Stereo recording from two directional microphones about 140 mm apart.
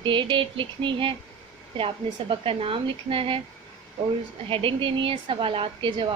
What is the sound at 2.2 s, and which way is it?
A woman's voice, 40° right (ahead or behind).